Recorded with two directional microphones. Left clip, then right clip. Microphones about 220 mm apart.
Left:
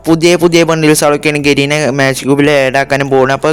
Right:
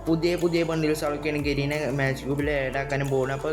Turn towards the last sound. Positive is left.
turn(degrees=-45)  # may be behind; listen again after turning